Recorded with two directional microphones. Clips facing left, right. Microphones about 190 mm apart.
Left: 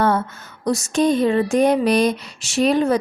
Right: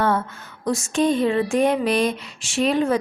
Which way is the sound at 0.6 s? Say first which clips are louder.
Left 2 dB; 40° left (ahead or behind).